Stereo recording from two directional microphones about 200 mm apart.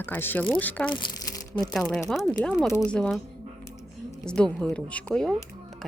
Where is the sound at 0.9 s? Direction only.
20° left (ahead or behind).